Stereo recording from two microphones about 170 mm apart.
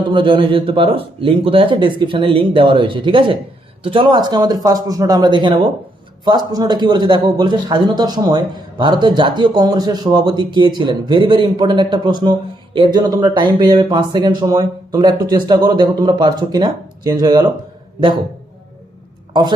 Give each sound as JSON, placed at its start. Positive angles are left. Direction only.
{"t": 0.1, "sound": "a man's voice", "side_deg": -30}
{"t": 19.3, "sound": "a man's voice", "side_deg": -25}